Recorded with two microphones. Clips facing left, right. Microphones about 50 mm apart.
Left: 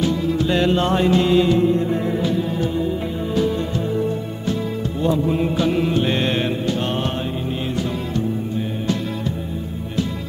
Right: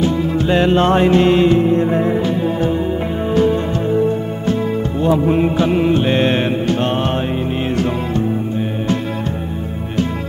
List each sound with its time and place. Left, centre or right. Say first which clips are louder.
0.0 s music: right 3 dB; right
5.0 s mantra: right 5 dB; right
6.6 s mantra: right 5 dB; right